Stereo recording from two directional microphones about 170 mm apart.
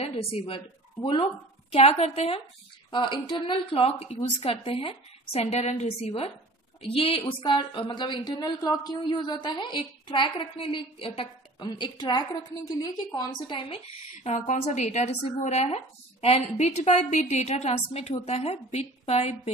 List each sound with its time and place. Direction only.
0.0 s a woman's voice: 35° left (ahead or behind)
1.7 s a woman's voice: 35° left (ahead or behind)
14.2 s a woman's voice: 45° left (ahead or behind)